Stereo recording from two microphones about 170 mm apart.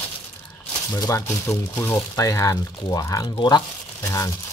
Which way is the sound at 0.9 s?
20° left (ahead or behind).